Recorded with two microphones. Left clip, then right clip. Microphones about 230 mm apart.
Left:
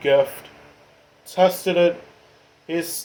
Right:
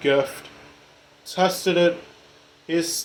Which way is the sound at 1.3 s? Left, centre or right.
Right.